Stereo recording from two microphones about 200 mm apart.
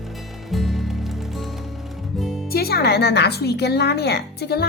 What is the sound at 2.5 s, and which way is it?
A woman's voice, 50° left (ahead or behind).